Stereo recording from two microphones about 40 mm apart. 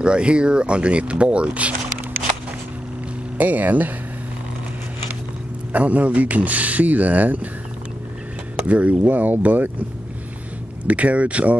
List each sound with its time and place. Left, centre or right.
0.0 s speech: right
3.3 s speech: right
5.7 s a man's voice: right
8.6 s a man's voice: right
9.0 s speech: right
10.9 s a man's voice: right